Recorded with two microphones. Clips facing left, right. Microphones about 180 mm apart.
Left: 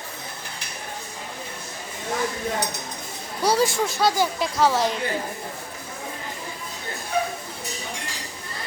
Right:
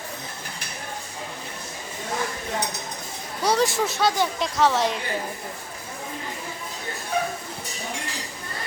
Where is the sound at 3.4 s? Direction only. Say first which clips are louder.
Left 1 dB; centre (ahead or behind).